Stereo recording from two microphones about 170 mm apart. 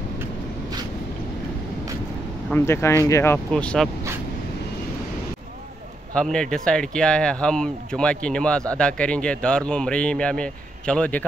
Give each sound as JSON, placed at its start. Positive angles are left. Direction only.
{"t": 2.5, "sound": "speech", "side_deg": 15}
{"t": 3.5, "sound": "speech", "side_deg": 5}
{"t": 6.1, "sound": "speech", "side_deg": 5}